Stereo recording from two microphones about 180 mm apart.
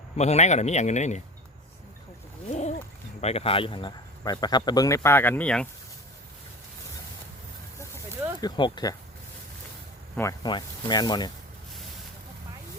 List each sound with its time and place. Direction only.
0.2 s speech: 40° left (ahead or behind)
2.5 s a sound: 40° left (ahead or behind)
3.2 s speech: 35° left (ahead or behind); by 5.6 s 5° left (ahead or behind)
8.4 s speech: 25° left (ahead or behind)
10.2 s speech: 20° left (ahead or behind)